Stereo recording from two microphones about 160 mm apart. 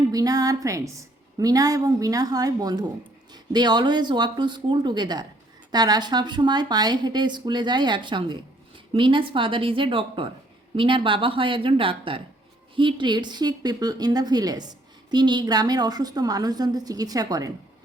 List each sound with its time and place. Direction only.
0.1 s a woman's voice: 25° right (ahead or behind)